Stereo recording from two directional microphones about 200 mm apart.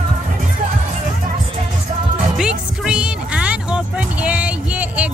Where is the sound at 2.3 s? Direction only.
5° right (ahead or behind).